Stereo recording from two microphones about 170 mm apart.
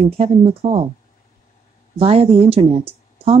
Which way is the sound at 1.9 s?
35° right (ahead or behind).